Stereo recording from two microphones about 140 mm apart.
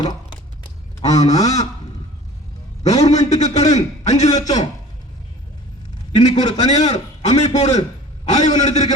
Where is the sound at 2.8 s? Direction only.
50° left (ahead or behind).